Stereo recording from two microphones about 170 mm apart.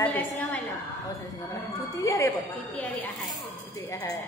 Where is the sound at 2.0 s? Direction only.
20° left (ahead or behind).